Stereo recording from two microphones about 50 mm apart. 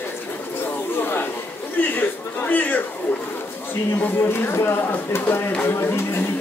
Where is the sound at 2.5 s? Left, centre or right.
Left.